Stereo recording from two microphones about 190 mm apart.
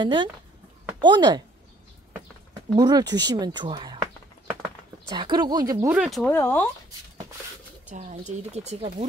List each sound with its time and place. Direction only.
0.0 s speech: 25° right (ahead or behind)
2.7 s speech: 20° right (ahead or behind)
5.9 s speech: centre (ahead or behind)
6.3 s speech: 10° left (ahead or behind)
7.9 s speech: 40° right (ahead or behind)